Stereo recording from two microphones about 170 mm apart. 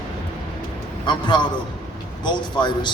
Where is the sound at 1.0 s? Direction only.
25° left (ahead or behind).